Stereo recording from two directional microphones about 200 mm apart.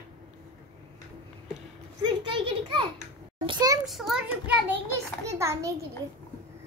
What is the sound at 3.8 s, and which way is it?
Speech, centre (ahead or behind).